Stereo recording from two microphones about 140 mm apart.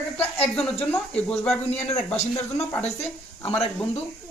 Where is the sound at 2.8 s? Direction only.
50° left (ahead or behind).